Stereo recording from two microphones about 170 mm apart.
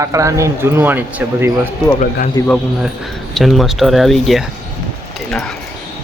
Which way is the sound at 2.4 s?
20° left (ahead or behind).